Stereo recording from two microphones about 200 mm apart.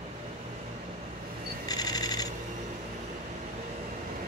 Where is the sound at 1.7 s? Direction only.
20° left (ahead or behind).